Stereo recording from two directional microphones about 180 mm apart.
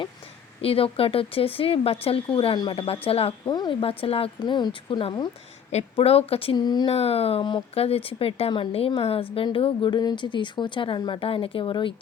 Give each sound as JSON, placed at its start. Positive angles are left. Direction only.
{"t": 0.6, "sound": "speech", "side_deg": 30}
{"t": 6.9, "sound": "speech", "side_deg": 35}